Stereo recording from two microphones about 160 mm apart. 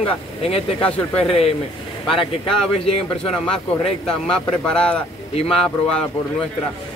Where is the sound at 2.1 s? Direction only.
35° left (ahead or behind).